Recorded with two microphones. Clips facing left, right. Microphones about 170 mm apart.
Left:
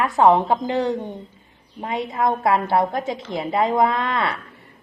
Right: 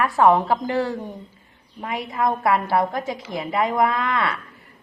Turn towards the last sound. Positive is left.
turn(degrees=30)  # may be behind; listen again after turning